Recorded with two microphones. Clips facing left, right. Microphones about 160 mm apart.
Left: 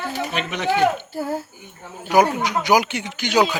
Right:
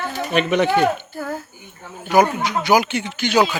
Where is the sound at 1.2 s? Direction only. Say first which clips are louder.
Left 2 dB; 30° left (ahead or behind).